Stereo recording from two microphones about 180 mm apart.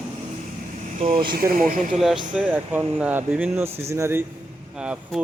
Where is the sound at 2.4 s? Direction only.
10° right (ahead or behind).